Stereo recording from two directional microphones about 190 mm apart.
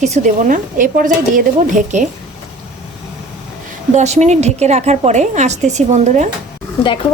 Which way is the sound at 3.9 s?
35° right (ahead or behind).